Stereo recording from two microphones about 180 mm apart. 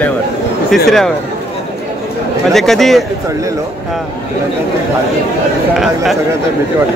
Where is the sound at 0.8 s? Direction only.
Centre (ahead or behind).